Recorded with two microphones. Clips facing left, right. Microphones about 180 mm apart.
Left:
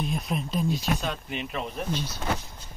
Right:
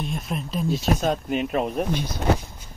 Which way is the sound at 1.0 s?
45° right (ahead or behind).